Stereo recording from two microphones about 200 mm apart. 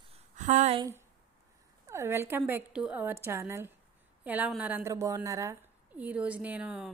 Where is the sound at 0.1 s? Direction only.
40° right (ahead or behind).